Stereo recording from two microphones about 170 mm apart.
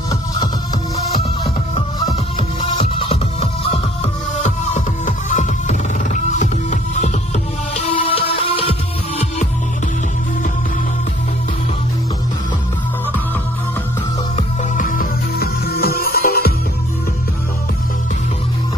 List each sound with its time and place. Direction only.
2.6 s music: 30° left (ahead or behind)
7.7 s music: 35° left (ahead or behind)
14.3 s music: 55° left (ahead or behind)